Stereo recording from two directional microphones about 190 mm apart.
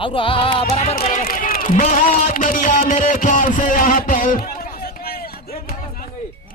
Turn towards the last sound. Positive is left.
turn(degrees=50)  # may be behind; listen again after turning